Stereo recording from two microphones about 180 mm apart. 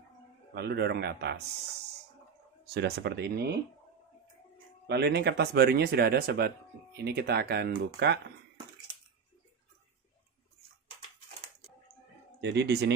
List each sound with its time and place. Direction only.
0.6 s speech: 65° right (ahead or behind)
2.6 s speech: 65° right (ahead or behind)
4.8 s speech: 70° right (ahead or behind)
12.4 s speech: 70° right (ahead or behind)